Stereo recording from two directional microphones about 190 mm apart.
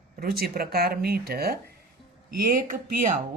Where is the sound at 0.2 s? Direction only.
55° right (ahead or behind).